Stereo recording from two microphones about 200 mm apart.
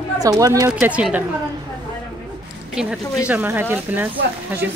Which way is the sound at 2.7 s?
5° right (ahead or behind).